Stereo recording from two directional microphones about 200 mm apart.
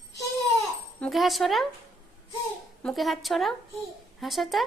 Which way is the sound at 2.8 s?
Centre (ahead or behind).